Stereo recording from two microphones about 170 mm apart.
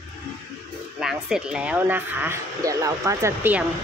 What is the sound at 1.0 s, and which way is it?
Speech, 5° right (ahead or behind).